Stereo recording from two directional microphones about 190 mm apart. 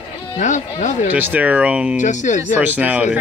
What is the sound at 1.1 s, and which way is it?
Speech, 10° right (ahead or behind).